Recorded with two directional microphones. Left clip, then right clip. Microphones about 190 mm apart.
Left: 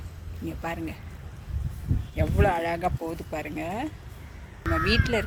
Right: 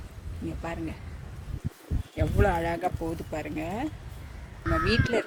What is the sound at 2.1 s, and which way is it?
Speech, 10° right (ahead or behind).